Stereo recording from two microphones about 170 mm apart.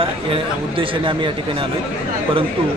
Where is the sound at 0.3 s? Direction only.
30° right (ahead or behind).